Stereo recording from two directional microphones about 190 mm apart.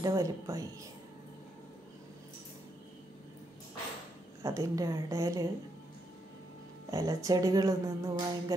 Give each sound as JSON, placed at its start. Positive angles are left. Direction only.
{"t": 0.0, "sound": "music", "side_deg": -15}
{"t": 4.4, "sound": "music", "side_deg": -15}
{"t": 6.9, "sound": "music", "side_deg": -20}